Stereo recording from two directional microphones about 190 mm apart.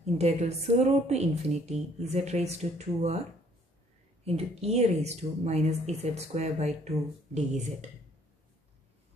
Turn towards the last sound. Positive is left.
turn(degrees=-35)  # may be behind; listen again after turning